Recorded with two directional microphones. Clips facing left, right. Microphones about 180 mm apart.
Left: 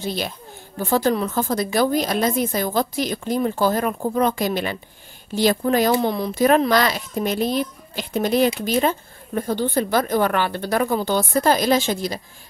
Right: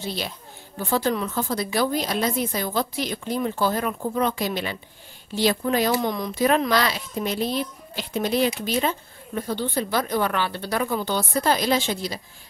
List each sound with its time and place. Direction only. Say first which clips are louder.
0.0 s a child's voice: left 4 dB; 50° left (ahead or behind)
5.9 s speech: left 4 dB; 30° left (ahead or behind)
6.3 s a child's voice: left 4 dB; 45° left (ahead or behind)